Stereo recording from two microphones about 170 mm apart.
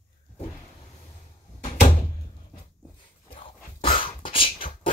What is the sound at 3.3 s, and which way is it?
Dog, 30° left (ahead or behind).